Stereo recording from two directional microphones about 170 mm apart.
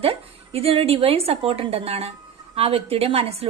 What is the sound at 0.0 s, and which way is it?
A woman's voice, 35° right (ahead or behind).